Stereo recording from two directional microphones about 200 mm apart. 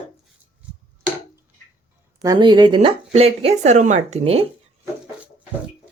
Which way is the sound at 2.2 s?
20° right (ahead or behind).